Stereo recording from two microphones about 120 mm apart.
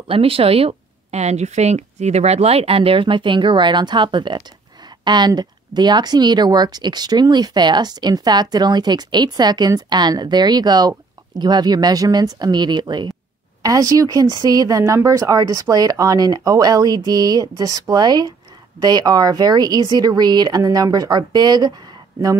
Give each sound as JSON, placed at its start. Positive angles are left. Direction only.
{"t": 0.1, "sound": "speech", "side_deg": -50}